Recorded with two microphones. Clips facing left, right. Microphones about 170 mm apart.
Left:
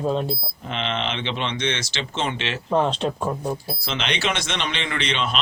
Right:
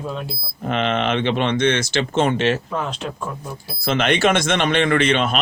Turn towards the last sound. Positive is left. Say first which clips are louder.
# right 8 dB
turn(degrees=-50)  # may be behind; listen again after turning